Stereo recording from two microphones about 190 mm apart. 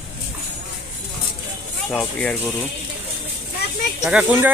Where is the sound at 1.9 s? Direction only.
5° left (ahead or behind).